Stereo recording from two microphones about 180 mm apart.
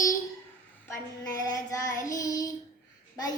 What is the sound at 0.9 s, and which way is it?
Child singing, 20° left (ahead or behind).